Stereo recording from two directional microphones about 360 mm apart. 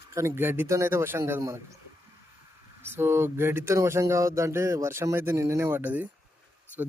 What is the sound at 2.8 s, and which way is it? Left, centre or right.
Speech, centre.